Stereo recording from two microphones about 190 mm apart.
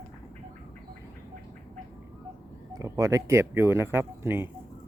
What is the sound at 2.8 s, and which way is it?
Speech, 15° right (ahead or behind).